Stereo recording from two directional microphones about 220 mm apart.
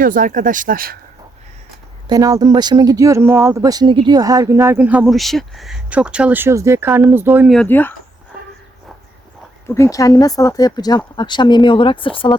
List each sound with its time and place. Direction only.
0.0 s speech: 40° right (ahead or behind)
2.0 s speech: 15° right (ahead or behind)
7.5 s speech: 5° left (ahead or behind)
9.6 s speech: 10° left (ahead or behind)